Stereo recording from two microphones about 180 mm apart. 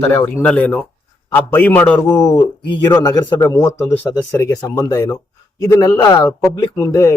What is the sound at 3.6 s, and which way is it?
A man's voice, 5° left (ahead or behind).